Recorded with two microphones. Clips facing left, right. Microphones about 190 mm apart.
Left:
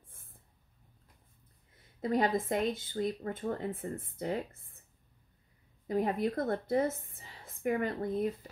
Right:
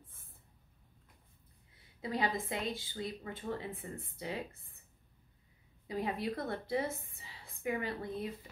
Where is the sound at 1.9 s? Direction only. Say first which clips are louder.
Left 6 dB; 45° left (ahead or behind).